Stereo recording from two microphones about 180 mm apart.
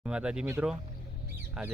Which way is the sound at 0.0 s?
5° right (ahead or behind).